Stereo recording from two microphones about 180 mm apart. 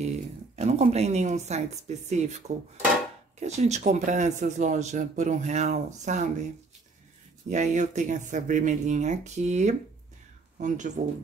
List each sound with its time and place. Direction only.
0.6 s speech: 35° right (ahead or behind)